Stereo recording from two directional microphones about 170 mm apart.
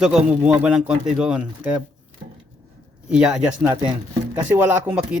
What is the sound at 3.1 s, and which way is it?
A man's voice, 5° right (ahead or behind).